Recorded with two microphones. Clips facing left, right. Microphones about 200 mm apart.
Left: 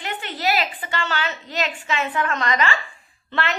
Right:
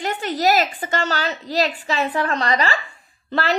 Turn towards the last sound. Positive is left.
turn(degrees=-40)  # may be behind; listen again after turning